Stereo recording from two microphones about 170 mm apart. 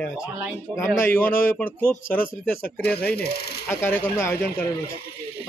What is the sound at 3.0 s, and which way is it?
Speech, 70° left (ahead or behind).